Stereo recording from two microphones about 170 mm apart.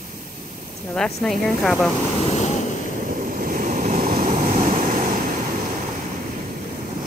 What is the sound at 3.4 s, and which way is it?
Waves, 50° right (ahead or behind).